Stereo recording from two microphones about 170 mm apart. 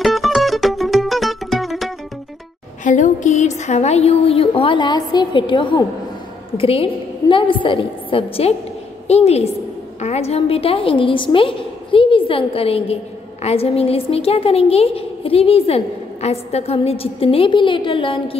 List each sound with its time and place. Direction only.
0.0 s mandolin: centre (ahead or behind)
2.8 s a woman's voice: 45° left (ahead or behind); by 18.2 s 30° left (ahead or behind)